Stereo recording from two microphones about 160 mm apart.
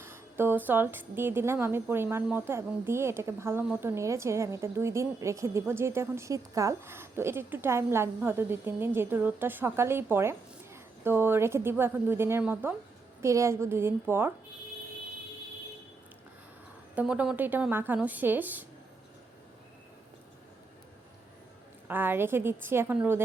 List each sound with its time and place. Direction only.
0.0 s speech: 15° right (ahead or behind)
16.9 s speech: 10° right (ahead or behind)
21.8 s speech: 10° right (ahead or behind)